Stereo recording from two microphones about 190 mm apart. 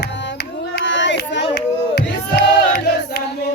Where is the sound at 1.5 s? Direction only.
55° left (ahead or behind).